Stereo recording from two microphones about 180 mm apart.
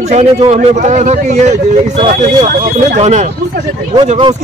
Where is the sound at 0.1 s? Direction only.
40° right (ahead or behind).